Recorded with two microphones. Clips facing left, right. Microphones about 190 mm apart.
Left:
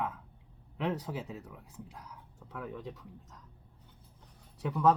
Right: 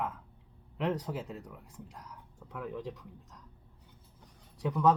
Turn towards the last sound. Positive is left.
turn(degrees=5)  # may be behind; listen again after turning